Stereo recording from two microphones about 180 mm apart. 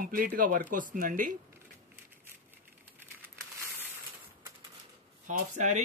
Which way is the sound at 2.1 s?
10° right (ahead or behind).